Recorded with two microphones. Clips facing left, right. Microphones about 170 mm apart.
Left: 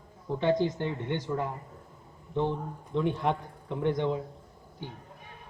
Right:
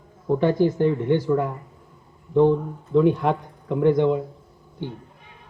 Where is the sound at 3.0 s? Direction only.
90° right.